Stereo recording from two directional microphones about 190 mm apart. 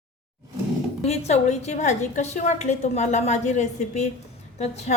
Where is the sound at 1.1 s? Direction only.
35° left (ahead or behind).